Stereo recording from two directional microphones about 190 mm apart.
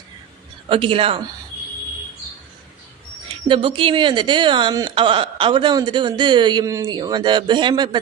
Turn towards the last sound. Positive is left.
turn(degrees=-25)  # may be behind; listen again after turning